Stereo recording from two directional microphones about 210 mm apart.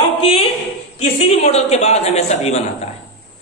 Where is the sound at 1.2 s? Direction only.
30° left (ahead or behind).